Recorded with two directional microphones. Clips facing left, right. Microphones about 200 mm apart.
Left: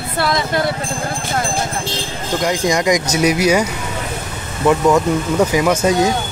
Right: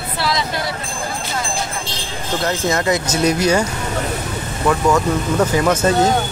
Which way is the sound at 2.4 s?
15° left (ahead or behind).